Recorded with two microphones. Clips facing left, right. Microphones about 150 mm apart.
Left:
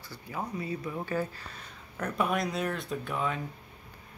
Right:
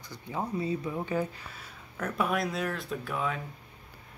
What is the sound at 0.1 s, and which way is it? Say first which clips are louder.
Speech: right 3 dB; 25° right (ahead or behind).